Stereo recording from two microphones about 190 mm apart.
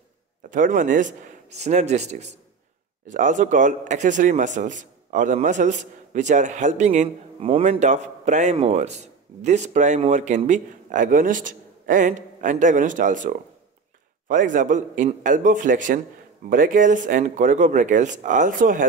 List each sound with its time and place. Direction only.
0.5 s speech: 45° right (ahead or behind)